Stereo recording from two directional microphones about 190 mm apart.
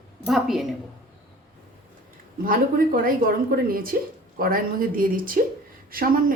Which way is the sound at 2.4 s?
50° right (ahead or behind).